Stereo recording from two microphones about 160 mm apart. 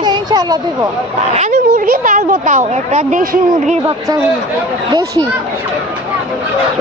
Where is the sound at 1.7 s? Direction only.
60° right (ahead or behind).